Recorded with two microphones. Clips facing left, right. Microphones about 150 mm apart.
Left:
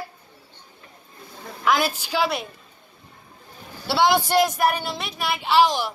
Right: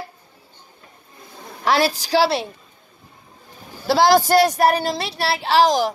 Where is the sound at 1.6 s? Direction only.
35° right (ahead or behind).